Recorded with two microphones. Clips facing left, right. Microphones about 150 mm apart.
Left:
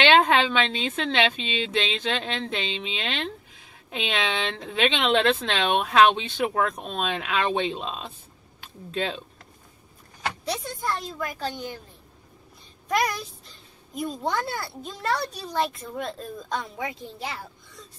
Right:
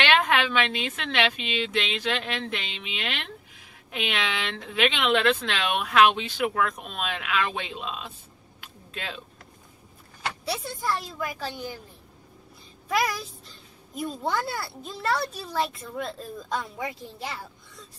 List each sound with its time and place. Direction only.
0.0 s a woman's voice: 30° left (ahead or behind)
8.5 s a sound: 30° left (ahead or behind)
10.4 s a woman's voice: 5° right (ahead or behind)
12.8 s a woman's voice: 5° right (ahead or behind)